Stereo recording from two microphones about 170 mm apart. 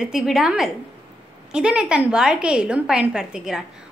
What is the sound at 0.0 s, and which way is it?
A woman's voice, 5° right (ahead or behind).